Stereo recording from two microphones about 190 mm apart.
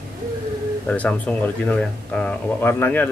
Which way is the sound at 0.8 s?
5° left (ahead or behind).